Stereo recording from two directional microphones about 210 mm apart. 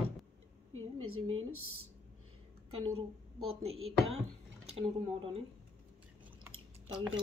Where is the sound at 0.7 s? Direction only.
85° right.